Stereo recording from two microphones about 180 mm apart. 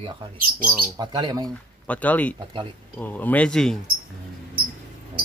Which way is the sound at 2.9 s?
10° left (ahead or behind).